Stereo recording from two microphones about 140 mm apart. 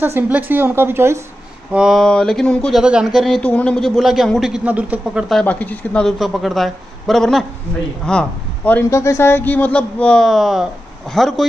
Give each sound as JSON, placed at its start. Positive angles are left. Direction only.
{"t": 0.0, "sound": "a woman's voice", "side_deg": -15}
{"t": 1.7, "sound": "a man's voice", "side_deg": -5}
{"t": 2.8, "sound": "a man's voice", "side_deg": -5}
{"t": 5.3, "sound": "a man's voice", "side_deg": 10}